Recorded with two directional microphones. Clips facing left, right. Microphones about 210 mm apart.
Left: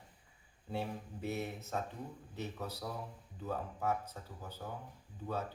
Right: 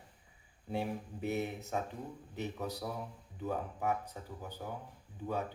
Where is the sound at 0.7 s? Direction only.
15° right (ahead or behind).